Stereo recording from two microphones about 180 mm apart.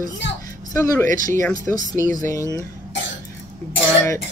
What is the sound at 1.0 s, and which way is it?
Speech, 50° right (ahead or behind).